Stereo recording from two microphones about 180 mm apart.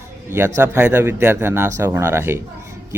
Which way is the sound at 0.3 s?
10° right (ahead or behind).